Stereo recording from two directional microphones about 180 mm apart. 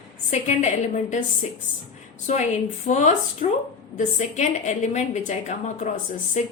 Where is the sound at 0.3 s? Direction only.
40° left (ahead or behind).